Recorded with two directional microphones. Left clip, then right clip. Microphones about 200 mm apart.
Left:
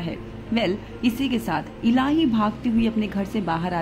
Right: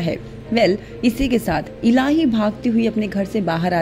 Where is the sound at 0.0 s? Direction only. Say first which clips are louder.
Right 8 dB; 20° right (ahead or behind).